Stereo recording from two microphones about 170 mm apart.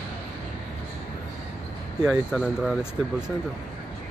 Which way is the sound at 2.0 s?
Centre (ahead or behind).